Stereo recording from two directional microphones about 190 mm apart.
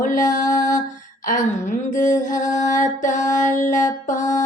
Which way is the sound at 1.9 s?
40° left (ahead or behind).